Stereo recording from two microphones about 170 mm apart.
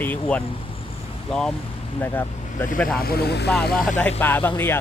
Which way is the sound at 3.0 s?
65° left (ahead or behind).